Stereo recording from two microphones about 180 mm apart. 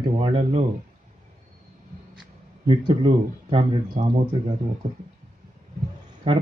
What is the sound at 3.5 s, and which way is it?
Speech, 25° right (ahead or behind).